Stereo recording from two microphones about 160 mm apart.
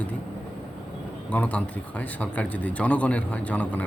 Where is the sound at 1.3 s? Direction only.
10° left (ahead or behind).